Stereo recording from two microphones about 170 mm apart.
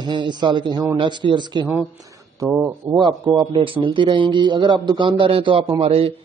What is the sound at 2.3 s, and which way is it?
Speech, 10° right (ahead or behind).